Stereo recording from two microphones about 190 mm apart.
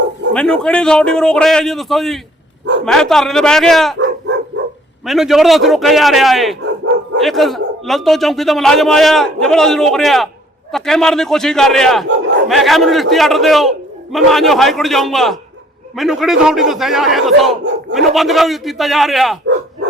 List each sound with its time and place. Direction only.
0.3 s a man's voice: 5° left (ahead or behind)
4.5 s dog: 75° right (ahead or behind)
5.0 s a man's voice: centre (ahead or behind)
12.0 s battle cry: 75° right (ahead or behind)
12.5 s a man's voice: centre (ahead or behind)